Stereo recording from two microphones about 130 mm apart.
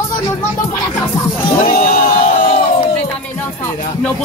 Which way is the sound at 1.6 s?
90° left.